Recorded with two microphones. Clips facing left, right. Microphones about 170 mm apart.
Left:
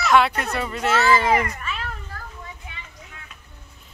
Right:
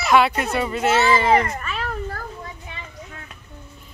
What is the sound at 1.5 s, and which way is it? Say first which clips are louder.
Cat: right 4 dB; 45° right (ahead or behind).